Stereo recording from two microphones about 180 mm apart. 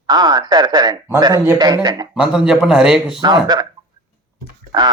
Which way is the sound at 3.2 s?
25° right (ahead or behind).